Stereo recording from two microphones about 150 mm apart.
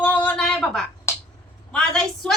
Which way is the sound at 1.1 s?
15° left (ahead or behind).